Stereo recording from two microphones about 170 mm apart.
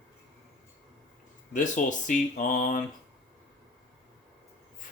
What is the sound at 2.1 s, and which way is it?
Speech, 50° left (ahead or behind).